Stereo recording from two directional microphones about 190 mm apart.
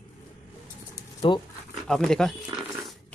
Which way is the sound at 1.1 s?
25° left (ahead or behind).